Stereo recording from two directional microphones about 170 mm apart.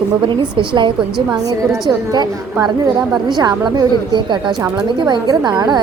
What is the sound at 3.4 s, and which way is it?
A woman's voice, 25° right (ahead or behind).